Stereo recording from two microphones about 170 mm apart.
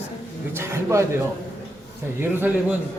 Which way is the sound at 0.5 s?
15° right (ahead or behind).